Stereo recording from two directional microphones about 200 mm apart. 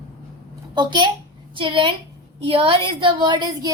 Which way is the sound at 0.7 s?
20° right (ahead or behind).